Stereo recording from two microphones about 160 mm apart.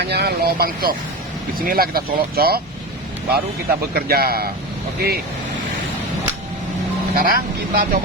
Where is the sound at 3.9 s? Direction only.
70° right (ahead or behind).